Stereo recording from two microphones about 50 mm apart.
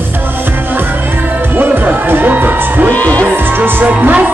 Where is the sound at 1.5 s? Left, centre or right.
Right.